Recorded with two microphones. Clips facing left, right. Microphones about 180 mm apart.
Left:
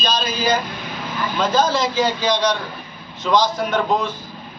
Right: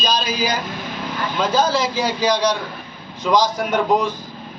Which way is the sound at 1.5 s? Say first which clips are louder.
Left 1 dB; 10° right (ahead or behind).